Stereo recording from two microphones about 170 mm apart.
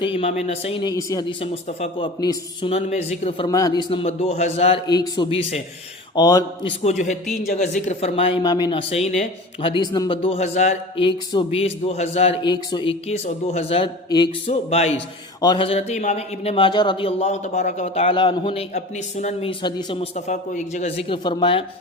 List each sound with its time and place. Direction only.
0.0 s a man's voice: 35° left (ahead or behind)
2.2 s a man's voice: 25° left (ahead or behind)
3.5 s a man's voice: 20° left (ahead or behind); by 4.8 s 35° left (ahead or behind)
4.9 s a man's voice: 25° left (ahead or behind)
6.1 s speech: 25° left (ahead or behind)
7.5 s a man's voice: 45° left (ahead or behind); by 8.8 s 25° left (ahead or behind)
8.9 s a man's voice: 40° left (ahead or behind)
11.0 s a man's voice: 30° left (ahead or behind)
12.4 s a man's voice: 25° left (ahead or behind)
15.4 s a man's voice: 25° left (ahead or behind)
20.1 s a man's voice: 45° left (ahead or behind); by 21.6 s 30° left (ahead or behind)